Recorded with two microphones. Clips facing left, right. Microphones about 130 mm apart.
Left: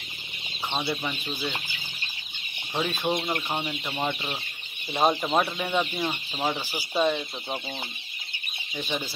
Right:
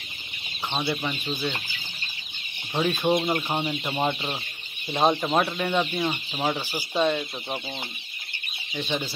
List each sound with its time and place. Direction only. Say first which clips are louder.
0.7 s speech: right 2 dB; centre (ahead or behind)
2.7 s speech: right 4 dB; centre (ahead or behind)
3.3 s speech: right 4 dB; 25° right (ahead or behind)
4.9 s speech: right 1 dB; centre (ahead or behind)
8.7 s speech: right 2 dB; centre (ahead or behind)